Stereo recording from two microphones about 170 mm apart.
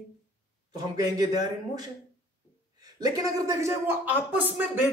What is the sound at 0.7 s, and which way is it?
A man's voice, 20° right (ahead or behind).